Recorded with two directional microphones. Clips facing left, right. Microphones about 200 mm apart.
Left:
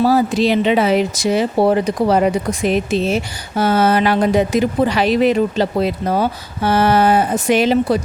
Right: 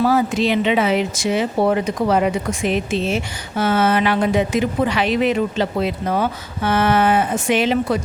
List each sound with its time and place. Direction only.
0.0 s speech: 35° left (ahead or behind)